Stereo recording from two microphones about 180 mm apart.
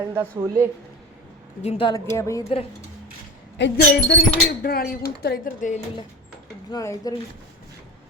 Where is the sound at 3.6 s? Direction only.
75° left (ahead or behind); by 5.8 s 50° left (ahead or behind).